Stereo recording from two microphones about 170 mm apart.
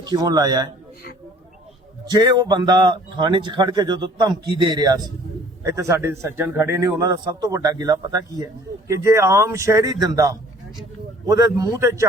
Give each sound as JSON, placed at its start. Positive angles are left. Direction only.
{"t": 0.0, "sound": "speech", "side_deg": -25}
{"t": 2.0, "sound": "speech", "side_deg": -25}